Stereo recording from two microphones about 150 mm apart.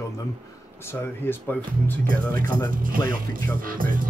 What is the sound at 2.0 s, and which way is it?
Speech, 70° right (ahead or behind).